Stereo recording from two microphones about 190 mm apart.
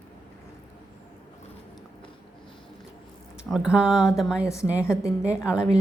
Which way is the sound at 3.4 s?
5° right (ahead or behind).